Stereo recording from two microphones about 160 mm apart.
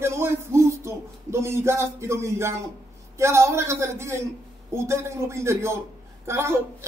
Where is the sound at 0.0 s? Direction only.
15° right (ahead or behind).